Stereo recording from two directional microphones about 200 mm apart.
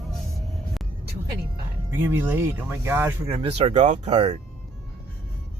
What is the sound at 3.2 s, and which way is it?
Speech, 30° right (ahead or behind).